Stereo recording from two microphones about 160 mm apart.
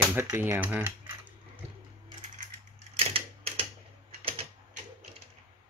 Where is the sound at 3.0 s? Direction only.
40° right (ahead or behind).